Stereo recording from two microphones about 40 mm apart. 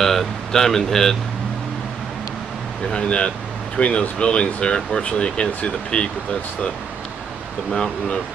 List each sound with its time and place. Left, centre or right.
0.0 s speech: centre
2.9 s speech: left
7.7 s speech: centre